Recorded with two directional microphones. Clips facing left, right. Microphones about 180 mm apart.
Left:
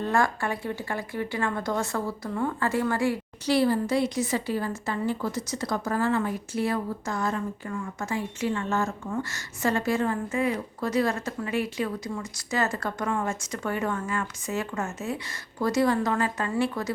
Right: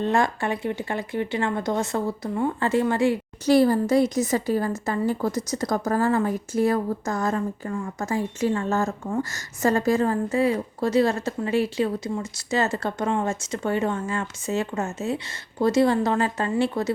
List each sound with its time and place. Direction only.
0.0 s speech: 20° right (ahead or behind)
3.4 s a woman's voice: 45° right (ahead or behind); by 16.9 s 25° right (ahead or behind)